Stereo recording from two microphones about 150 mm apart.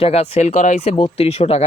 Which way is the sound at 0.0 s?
45° left (ahead or behind).